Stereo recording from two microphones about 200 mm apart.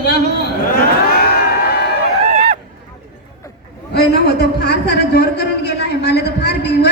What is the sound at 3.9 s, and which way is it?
A man's voice, 55° left (ahead or behind).